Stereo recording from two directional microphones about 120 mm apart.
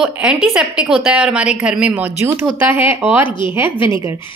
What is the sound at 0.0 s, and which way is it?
A woman's voice, 5° right (ahead or behind).